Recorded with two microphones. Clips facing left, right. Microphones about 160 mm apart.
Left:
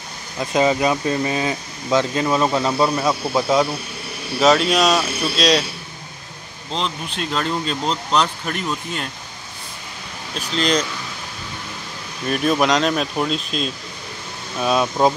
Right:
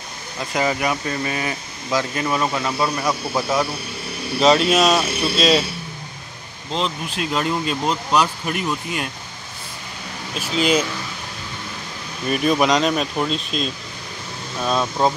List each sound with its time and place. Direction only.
0.4 s speech: 20° left (ahead or behind)
4.4 s speech: centre (ahead or behind)
6.7 s speech: 5° right (ahead or behind)
10.3 s speech: 5° right (ahead or behind)
12.3 s speech: centre (ahead or behind)